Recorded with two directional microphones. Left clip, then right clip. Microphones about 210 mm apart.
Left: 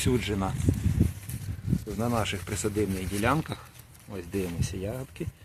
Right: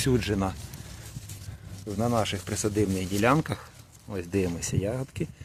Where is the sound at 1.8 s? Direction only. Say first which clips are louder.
Right 3 dB; 25° right (ahead or behind).